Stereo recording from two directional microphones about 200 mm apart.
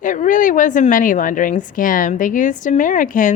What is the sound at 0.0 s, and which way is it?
A woman's voice, 40° left (ahead or behind).